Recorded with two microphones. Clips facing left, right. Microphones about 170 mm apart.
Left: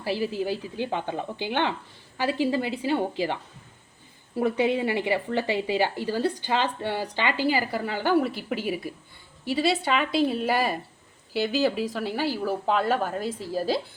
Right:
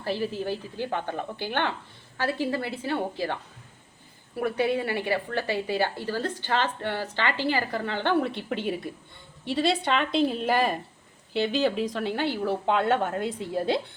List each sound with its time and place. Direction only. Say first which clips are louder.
0.0 s a woman's voice: left 2 dB; 10° left (ahead or behind)
4.4 s a woman's voice: left 2 dB; 15° left (ahead or behind)